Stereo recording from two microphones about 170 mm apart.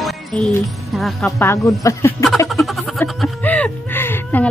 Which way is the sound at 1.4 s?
15° left (ahead or behind).